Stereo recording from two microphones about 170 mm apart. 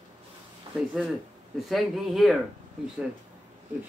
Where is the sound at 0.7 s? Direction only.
30° right (ahead or behind).